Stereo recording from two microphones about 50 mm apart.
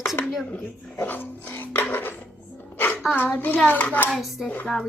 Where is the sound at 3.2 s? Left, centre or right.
Left.